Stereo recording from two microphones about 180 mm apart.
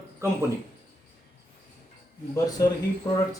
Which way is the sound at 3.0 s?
25° left (ahead or behind).